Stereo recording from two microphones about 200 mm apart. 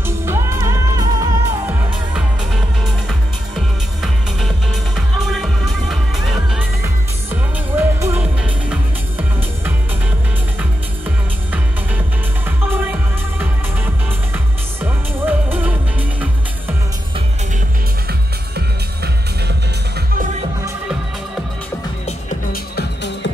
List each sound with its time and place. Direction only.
0.0 s music: 15° right (ahead or behind)
3.1 s music: centre (ahead or behind)
6.8 s music: 15° right (ahead or behind)
10.6 s music: 10° right (ahead or behind)
22.0 s music: 35° left (ahead or behind)
22.8 s music: 60° left (ahead or behind)